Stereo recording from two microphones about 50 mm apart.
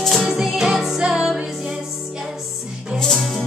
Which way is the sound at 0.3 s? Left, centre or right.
Centre.